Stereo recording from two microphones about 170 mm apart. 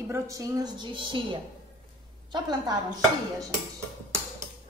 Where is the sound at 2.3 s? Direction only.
25° right (ahead or behind).